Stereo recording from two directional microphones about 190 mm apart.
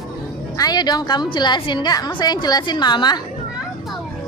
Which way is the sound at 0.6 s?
20° left (ahead or behind).